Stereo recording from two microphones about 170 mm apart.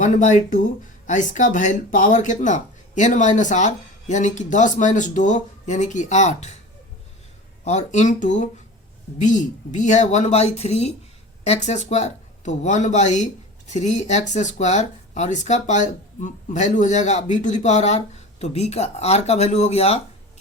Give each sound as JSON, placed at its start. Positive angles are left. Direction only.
{"t": 0.0, "sound": "speech", "side_deg": 45}
{"t": 7.6, "sound": "speech", "side_deg": 40}